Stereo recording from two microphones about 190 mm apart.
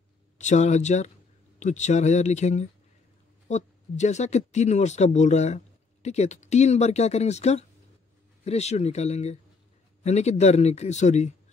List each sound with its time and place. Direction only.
0.4 s speech: 40° left (ahead or behind)